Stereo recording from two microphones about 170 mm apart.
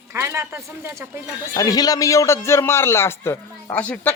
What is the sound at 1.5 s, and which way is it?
A man's voice, 20° left (ahead or behind).